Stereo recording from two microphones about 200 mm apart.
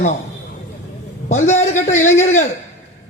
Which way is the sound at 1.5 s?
35° left (ahead or behind).